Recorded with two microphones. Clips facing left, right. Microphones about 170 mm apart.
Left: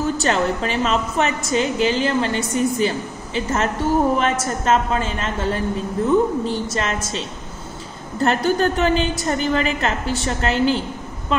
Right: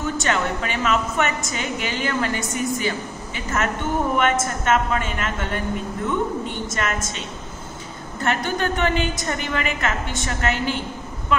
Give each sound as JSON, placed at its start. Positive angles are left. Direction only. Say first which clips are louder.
{"t": 0.2, "sound": "a woman's voice", "louder": "left 4 dB", "side_deg": 35}